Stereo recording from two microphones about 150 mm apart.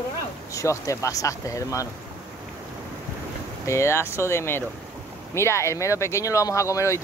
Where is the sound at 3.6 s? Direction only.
20° left (ahead or behind).